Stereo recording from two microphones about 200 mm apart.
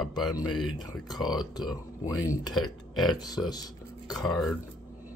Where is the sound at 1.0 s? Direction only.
20° left (ahead or behind).